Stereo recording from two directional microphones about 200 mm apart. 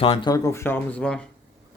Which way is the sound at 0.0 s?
25° left (ahead or behind).